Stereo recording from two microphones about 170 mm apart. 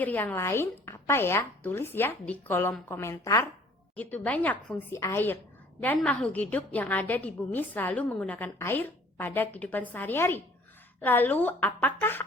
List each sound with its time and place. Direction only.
0.0 s a woman's voice: 10° left (ahead or behind)